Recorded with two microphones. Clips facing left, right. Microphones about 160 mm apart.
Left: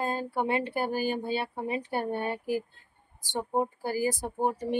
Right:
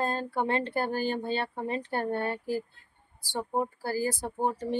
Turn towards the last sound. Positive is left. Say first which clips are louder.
# left 1 dB
turn(degrees=15)  # may be behind; listen again after turning